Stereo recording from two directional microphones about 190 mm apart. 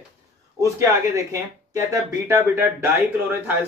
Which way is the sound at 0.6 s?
15° right (ahead or behind).